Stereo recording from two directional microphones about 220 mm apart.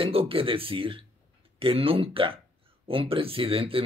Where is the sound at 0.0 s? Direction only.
25° right (ahead or behind).